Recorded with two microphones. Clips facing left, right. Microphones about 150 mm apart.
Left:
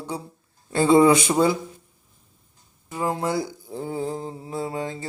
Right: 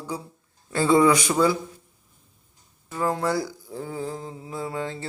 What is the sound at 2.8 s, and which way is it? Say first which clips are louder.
Speech: even; 15° left (ahead or behind).